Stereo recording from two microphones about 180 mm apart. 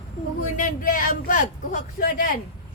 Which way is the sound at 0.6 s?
50° left (ahead or behind).